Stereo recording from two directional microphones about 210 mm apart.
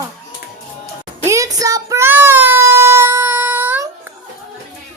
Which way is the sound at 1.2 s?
15° right (ahead or behind).